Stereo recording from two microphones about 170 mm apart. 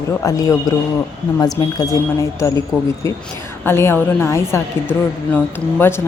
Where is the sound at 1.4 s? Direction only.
20° left (ahead or behind).